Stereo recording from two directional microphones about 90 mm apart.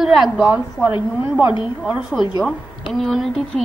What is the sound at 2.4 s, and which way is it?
A woman's voice, centre (ahead or behind).